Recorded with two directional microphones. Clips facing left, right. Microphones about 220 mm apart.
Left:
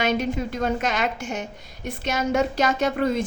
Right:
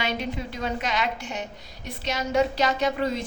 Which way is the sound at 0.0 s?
45° left (ahead or behind).